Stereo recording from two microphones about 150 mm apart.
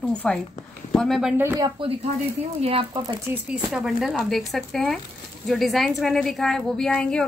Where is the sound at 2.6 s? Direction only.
35° right (ahead or behind).